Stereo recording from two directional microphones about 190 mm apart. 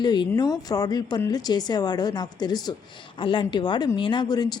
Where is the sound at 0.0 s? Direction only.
20° left (ahead or behind).